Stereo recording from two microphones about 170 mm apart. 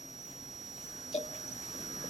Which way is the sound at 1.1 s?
40° left (ahead or behind).